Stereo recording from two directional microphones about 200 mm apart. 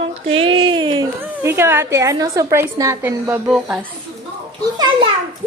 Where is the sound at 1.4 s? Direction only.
10° right (ahead or behind).